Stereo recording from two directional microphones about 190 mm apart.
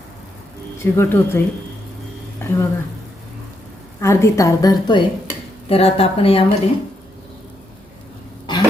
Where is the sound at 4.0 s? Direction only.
15° left (ahead or behind).